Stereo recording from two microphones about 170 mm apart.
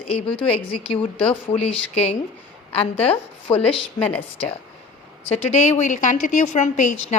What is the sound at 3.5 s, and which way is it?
Speech, 35° left (ahead or behind).